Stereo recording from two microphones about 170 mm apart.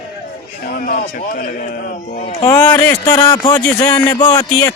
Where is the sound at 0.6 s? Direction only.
55° left (ahead or behind).